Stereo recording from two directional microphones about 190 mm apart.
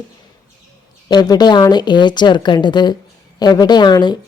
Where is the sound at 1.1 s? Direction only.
20° left (ahead or behind).